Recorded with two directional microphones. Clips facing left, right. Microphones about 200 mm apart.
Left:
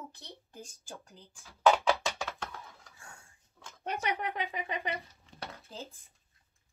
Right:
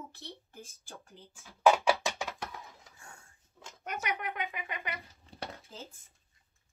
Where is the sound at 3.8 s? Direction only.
30° left (ahead or behind).